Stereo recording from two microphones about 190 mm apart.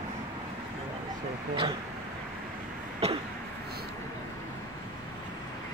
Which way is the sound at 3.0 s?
35° right (ahead or behind).